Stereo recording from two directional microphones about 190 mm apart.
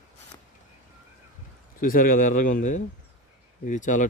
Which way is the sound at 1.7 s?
45° left (ahead or behind).